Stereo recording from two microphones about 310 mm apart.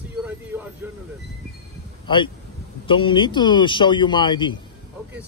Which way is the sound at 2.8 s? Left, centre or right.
Centre.